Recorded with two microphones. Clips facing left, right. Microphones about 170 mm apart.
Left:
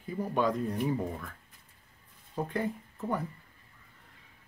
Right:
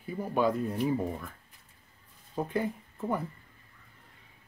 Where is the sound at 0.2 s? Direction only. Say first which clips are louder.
Right 1 dB; 5° right (ahead or behind).